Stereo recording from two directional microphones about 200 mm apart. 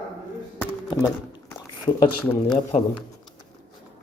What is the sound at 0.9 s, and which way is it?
Speech, 20° left (ahead or behind).